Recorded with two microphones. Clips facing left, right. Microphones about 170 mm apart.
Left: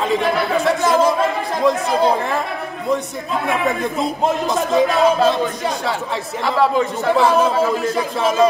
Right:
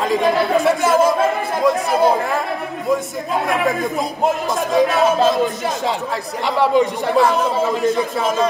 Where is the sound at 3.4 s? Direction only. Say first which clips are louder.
Even; centre (ahead or behind).